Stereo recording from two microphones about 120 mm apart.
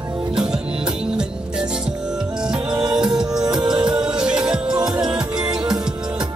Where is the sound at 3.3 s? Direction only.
35° right (ahead or behind).